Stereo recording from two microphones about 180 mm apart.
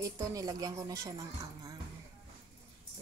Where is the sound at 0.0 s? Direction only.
20° right (ahead or behind).